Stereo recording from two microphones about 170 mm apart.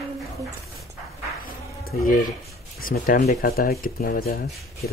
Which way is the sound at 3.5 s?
60° left (ahead or behind).